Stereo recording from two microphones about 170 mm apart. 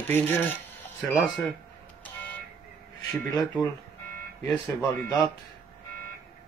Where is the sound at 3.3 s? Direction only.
20° left (ahead or behind).